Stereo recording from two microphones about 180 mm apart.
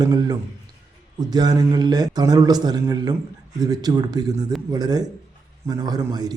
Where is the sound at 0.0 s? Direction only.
20° right (ahead or behind).